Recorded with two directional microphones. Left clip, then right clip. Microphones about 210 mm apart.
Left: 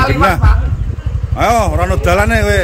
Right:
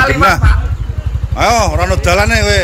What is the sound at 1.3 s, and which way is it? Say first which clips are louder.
Speech: right 1 dB; 15° left (ahead or behind).